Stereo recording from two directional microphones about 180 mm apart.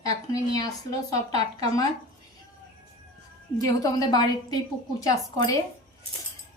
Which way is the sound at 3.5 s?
20° left (ahead or behind).